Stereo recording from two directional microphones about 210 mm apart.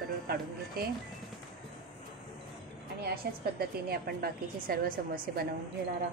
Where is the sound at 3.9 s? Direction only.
45° right (ahead or behind).